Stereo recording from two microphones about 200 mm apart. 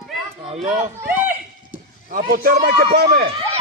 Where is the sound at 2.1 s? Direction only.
45° right (ahead or behind).